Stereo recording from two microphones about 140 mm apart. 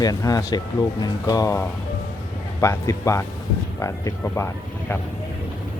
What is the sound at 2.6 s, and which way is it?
Speech, 20° left (ahead or behind).